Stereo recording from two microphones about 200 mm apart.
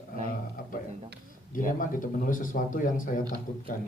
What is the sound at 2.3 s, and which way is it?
Speech, 40° left (ahead or behind).